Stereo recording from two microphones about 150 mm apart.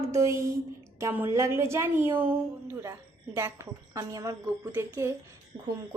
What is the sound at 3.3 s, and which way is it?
Speech, 20° right (ahead or behind).